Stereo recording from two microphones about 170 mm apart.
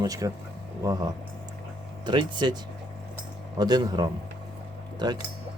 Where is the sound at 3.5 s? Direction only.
25° right (ahead or behind).